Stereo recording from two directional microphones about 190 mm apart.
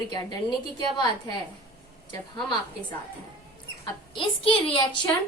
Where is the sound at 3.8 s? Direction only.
25° left (ahead or behind).